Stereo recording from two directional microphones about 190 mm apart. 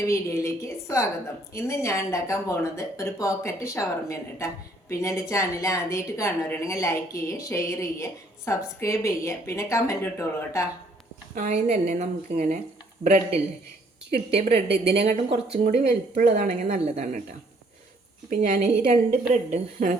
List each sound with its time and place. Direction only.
0.0 s speech: 15° left (ahead or behind)
11.3 s a woman's voice: 40° right (ahead or behind)
15.3 s a woman's voice: 35° right (ahead or behind)
18.3 s a woman's voice: 45° right (ahead or behind)